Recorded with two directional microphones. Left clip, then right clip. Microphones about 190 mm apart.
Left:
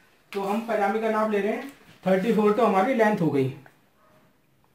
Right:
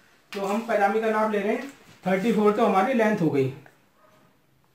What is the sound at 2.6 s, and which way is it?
Speech, 20° left (ahead or behind).